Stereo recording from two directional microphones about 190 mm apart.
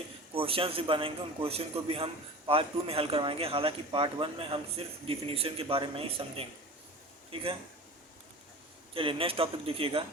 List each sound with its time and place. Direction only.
0.3 s speech: 30° right (ahead or behind)
9.0 s speech: 30° right (ahead or behind)